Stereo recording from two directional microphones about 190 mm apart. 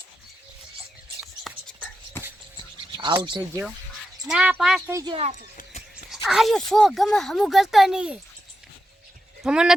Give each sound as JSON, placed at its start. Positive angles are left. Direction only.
{"t": 1.2, "sound": "music", "side_deg": 0}
{"t": 3.0, "sound": "speech", "side_deg": -25}
{"t": 4.3, "sound": "speech", "side_deg": -5}
{"t": 4.9, "sound": "speech", "side_deg": -15}
{"t": 6.2, "sound": "speech", "side_deg": 0}
{"t": 9.4, "sound": "speech", "side_deg": -5}